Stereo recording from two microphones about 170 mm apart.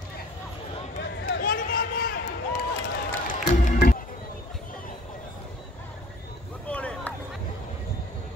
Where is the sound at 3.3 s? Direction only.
50° left (ahead or behind).